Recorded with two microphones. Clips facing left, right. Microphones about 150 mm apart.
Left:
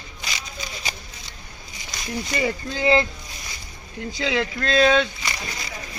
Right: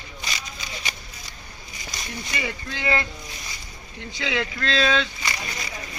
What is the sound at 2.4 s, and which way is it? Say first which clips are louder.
Speech: left 7 dB; 35° left (ahead or behind).